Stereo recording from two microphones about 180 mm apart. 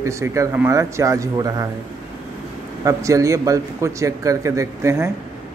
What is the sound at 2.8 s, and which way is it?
Speech, 20° right (ahead or behind).